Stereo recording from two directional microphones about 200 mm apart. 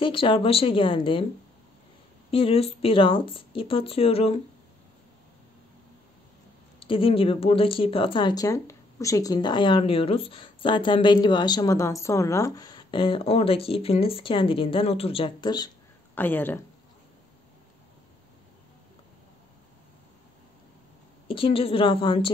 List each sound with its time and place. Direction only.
0.0 s speech: 25° left (ahead or behind)
2.3 s speech: 30° left (ahead or behind)
6.8 s speech: 25° left (ahead or behind)
16.2 s speech: 10° left (ahead or behind)
21.3 s speech: 25° left (ahead or behind)